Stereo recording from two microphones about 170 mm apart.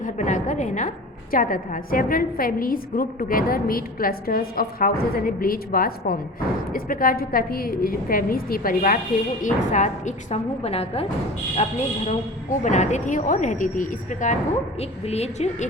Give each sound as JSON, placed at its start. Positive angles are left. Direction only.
{"t": 0.0, "sound": "a woman's voice", "side_deg": 45}